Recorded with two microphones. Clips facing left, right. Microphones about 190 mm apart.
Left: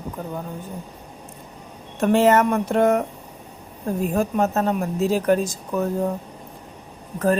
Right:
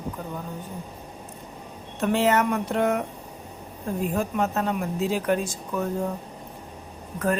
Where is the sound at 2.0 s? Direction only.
50° left (ahead or behind).